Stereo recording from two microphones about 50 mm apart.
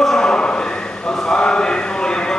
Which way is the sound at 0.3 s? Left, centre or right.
Centre.